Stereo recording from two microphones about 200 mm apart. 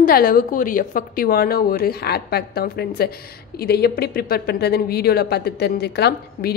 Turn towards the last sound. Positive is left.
turn(degrees=55)  # may be behind; listen again after turning